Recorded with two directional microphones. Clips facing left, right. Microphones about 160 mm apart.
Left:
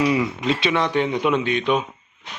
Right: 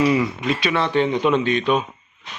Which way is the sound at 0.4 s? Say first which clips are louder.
Even; 20° left (ahead or behind).